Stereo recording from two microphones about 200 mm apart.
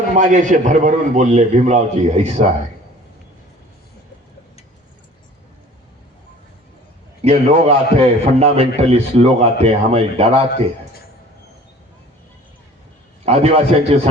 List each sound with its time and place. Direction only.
0.1 s a man's voice: 40° right (ahead or behind)
7.3 s a man's voice: 30° right (ahead or behind)
13.2 s a man's voice: 30° right (ahead or behind)